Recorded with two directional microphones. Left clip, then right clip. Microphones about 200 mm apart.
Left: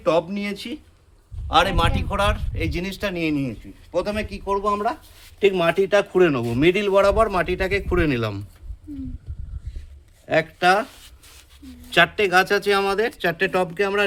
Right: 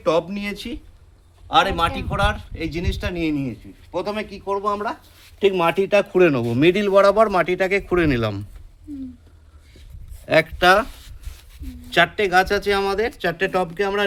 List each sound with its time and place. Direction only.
0.0 s speech: 20° right (ahead or behind)
1.5 s speech: 5° left (ahead or behind)
5.4 s speech: 20° right (ahead or behind)
10.2 s speech: 30° right (ahead or behind)
11.0 s a sound: centre (ahead or behind)
11.9 s speech: centre (ahead or behind)